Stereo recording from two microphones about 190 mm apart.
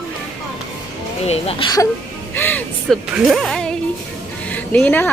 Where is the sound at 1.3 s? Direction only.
30° left (ahead or behind).